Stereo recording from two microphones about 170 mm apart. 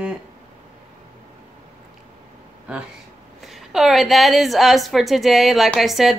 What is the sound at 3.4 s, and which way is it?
A woman's voice, centre (ahead or behind).